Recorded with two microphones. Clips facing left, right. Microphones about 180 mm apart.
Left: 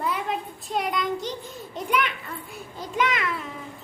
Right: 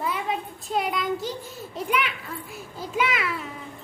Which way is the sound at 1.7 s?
Centre (ahead or behind).